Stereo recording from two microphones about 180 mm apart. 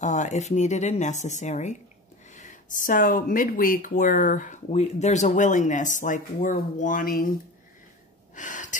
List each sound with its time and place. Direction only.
0.0 s speech: 40° left (ahead or behind)
8.4 s gasp: 45° left (ahead or behind)